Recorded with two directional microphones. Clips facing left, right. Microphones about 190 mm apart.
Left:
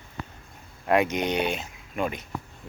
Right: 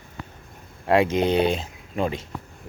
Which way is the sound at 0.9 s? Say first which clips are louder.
Right 4 dB; 30° right (ahead or behind).